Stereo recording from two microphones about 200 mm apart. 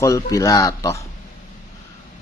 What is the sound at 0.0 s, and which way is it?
Speech, 15° left (ahead or behind).